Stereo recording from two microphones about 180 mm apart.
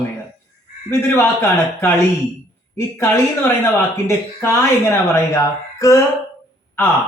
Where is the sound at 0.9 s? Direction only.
15° left (ahead or behind).